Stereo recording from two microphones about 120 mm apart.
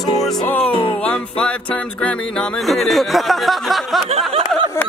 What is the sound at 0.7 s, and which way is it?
Speech, 45° left (ahead or behind).